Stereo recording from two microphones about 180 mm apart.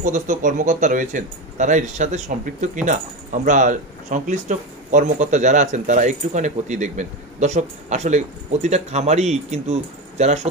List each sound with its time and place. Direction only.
0.0 s speech: 45° right (ahead or behind)